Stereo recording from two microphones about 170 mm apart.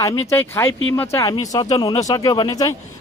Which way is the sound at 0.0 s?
20° left (ahead or behind).